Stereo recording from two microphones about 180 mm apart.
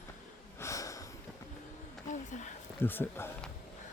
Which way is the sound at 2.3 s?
45° left (ahead or behind).